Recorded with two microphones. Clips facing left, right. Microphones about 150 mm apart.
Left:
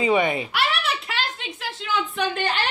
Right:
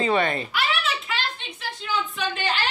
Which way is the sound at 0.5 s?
65° left (ahead or behind).